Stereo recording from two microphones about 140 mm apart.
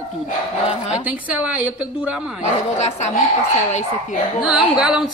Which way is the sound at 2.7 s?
55° left (ahead or behind).